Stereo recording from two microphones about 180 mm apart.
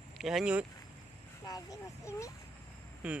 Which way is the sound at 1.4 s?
20° left (ahead or behind).